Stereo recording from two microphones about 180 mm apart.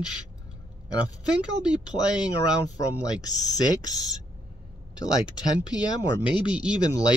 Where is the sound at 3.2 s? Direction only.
20° left (ahead or behind).